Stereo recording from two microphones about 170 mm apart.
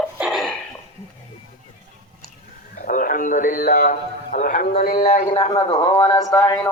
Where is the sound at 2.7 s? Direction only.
55° left (ahead or behind).